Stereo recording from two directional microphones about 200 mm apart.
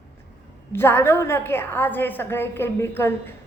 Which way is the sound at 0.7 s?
10° left (ahead or behind).